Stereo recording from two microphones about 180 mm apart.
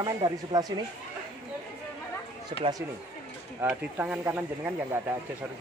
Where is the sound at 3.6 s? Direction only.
10° right (ahead or behind).